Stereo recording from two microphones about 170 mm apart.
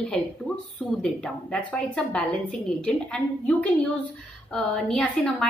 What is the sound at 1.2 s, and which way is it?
A woman's voice, 5° left (ahead or behind).